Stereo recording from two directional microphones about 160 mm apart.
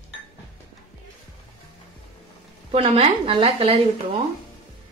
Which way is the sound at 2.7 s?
40° right (ahead or behind).